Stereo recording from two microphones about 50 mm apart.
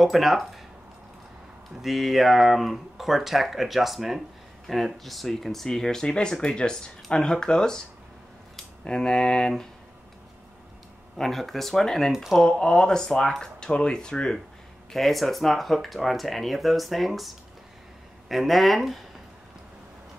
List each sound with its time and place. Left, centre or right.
0.0 s speech: centre
1.8 s speech: centre
8.8 s speech: centre
11.1 s speech: centre
12.1 s speech: centre
12.4 s speech: centre
14.9 s speech: centre
18.3 s speech: centre